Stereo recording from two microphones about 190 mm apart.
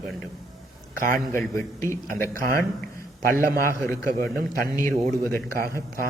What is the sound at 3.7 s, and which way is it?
Speech, 15° left (ahead or behind).